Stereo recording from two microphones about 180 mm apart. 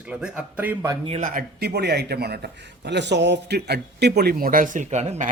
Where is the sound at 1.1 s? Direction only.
45° right (ahead or behind).